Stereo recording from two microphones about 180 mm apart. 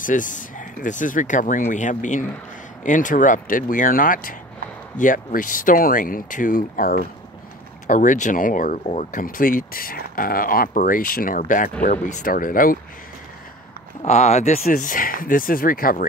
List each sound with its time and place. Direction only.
0.0 s speech: 45° left (ahead or behind)
14.0 s speech: 40° left (ahead or behind)